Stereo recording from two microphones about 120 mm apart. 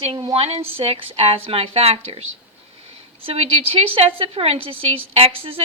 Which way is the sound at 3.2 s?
50° right (ahead or behind).